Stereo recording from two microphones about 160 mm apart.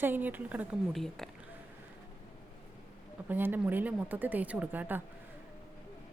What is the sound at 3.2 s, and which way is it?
Speech, 10° right (ahead or behind).